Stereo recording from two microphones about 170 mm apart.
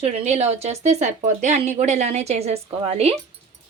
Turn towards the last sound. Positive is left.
turn(degrees=-35)  # may be behind; listen again after turning